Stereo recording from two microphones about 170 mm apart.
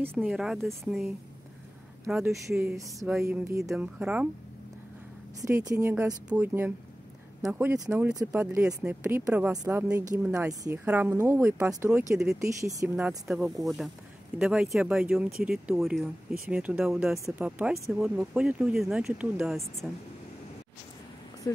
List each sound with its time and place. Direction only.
0.2 s speech: centre (ahead or behind)
2.4 s speech: 15° right (ahead or behind)
3.6 s speech: 5° right (ahead or behind)
5.4 s speech: 20° right (ahead or behind)
14.4 s speech: centre (ahead or behind)
21.5 s speech: 20° left (ahead or behind)